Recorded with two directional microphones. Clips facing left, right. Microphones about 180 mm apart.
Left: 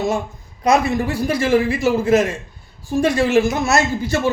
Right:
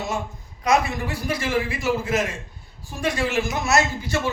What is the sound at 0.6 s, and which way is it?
A man's voice, 30° left (ahead or behind).